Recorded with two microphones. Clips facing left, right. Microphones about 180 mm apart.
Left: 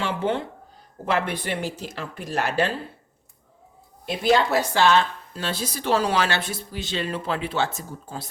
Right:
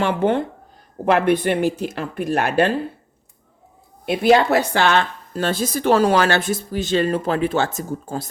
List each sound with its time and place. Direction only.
0.0 s a woman's voice: 55° right (ahead or behind)
4.0 s a woman's voice: 60° right (ahead or behind); by 8.3 s 45° right (ahead or behind)